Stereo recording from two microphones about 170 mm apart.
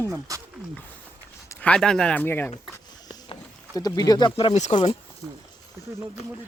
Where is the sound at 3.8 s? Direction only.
20° left (ahead or behind).